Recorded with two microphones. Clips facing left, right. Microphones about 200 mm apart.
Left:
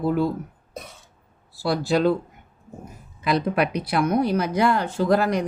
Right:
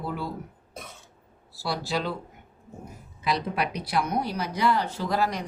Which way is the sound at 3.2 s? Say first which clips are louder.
Left 6 dB; 55° left (ahead or behind).